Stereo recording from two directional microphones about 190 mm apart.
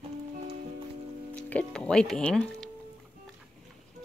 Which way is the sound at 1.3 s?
5° left (ahead or behind).